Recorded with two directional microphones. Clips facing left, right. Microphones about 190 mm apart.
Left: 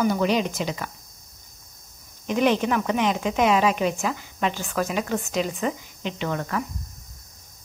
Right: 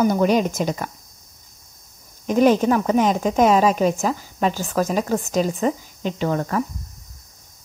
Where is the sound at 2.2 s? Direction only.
40° right (ahead or behind).